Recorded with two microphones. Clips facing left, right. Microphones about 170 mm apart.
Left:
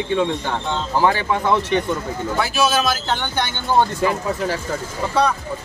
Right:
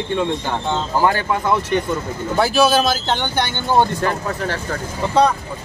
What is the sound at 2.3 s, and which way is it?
Speech, 30° right (ahead or behind).